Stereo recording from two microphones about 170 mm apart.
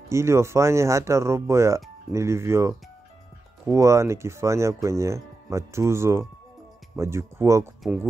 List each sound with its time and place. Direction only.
0.1 s speech: 15° right (ahead or behind)